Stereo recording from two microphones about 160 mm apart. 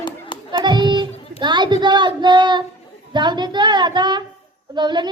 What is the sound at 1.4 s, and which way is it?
A woman's voice, 30° right (ahead or behind).